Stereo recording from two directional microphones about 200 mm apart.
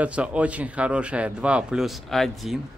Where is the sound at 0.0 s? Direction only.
5° right (ahead or behind).